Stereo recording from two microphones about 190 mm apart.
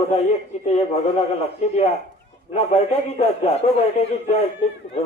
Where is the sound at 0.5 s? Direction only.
35° left (ahead or behind).